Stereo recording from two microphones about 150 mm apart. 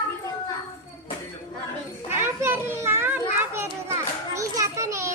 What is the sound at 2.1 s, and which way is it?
Children playing, 15° right (ahead or behind).